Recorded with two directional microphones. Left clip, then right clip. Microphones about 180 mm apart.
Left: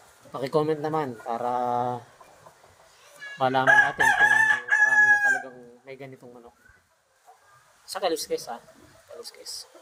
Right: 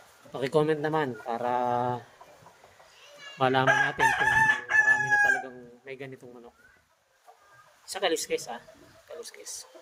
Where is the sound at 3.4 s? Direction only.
40° right (ahead or behind).